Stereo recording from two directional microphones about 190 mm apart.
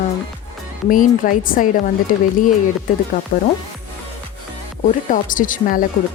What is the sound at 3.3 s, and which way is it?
Speech, 50° left (ahead or behind).